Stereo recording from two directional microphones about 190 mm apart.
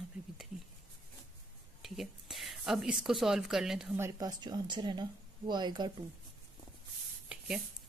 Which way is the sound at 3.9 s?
15° right (ahead or behind).